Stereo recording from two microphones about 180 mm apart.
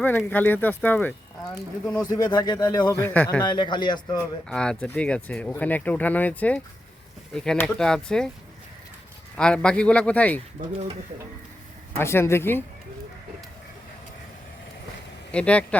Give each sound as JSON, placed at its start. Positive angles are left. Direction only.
{"t": 0.0, "sound": "speech", "side_deg": 10}
{"t": 2.0, "sound": "speech", "side_deg": 20}
{"t": 3.0, "sound": "speech", "side_deg": 10}
{"t": 3.4, "sound": "speech", "side_deg": 25}
{"t": 4.4, "sound": "speech", "side_deg": 5}
{"t": 9.4, "sound": "speech", "side_deg": 5}
{"t": 11.9, "sound": "speech", "side_deg": 15}
{"t": 15.3, "sound": "speech", "side_deg": 5}